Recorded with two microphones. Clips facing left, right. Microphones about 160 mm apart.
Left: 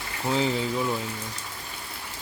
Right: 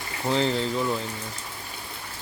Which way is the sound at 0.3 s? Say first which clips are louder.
Right 1 dB; 5° left (ahead or behind).